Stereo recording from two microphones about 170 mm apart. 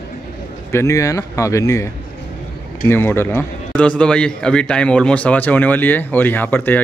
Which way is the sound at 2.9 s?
15° left (ahead or behind).